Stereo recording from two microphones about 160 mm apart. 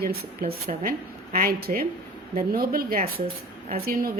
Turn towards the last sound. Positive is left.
turn(degrees=-65)  # may be behind; listen again after turning